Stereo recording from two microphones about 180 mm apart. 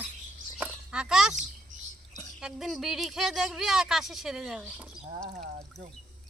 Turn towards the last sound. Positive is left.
turn(degrees=0)  # may be behind; listen again after turning